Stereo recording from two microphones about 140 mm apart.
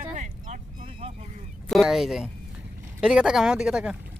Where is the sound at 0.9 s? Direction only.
45° right (ahead or behind).